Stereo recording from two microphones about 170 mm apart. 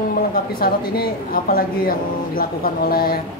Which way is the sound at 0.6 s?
60° left (ahead or behind).